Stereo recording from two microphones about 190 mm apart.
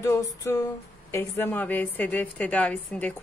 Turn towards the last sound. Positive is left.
turn(degrees=5)  # may be behind; listen again after turning